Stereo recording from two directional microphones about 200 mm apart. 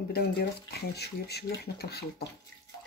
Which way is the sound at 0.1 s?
50° left (ahead or behind).